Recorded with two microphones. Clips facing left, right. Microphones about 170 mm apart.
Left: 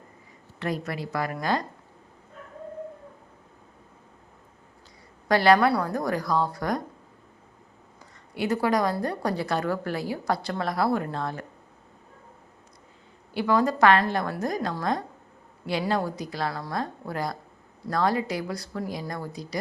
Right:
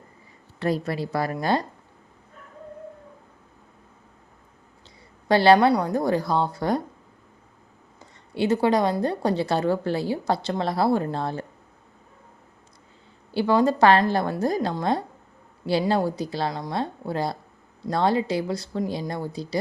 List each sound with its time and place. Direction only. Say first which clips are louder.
0.6 s a woman's voice: right 5 dB; 30° right (ahead or behind)
5.3 s a woman's voice: right 3 dB; 30° right (ahead or behind)
8.4 s a woman's voice: right 4 dB; 25° right (ahead or behind)
13.3 s a woman's voice: right 3 dB; 30° right (ahead or behind)